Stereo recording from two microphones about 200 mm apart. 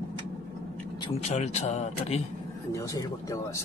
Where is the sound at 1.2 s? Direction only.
35° left (ahead or behind).